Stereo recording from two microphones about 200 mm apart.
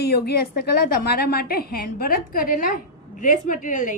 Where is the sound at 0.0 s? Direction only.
50° left (ahead or behind).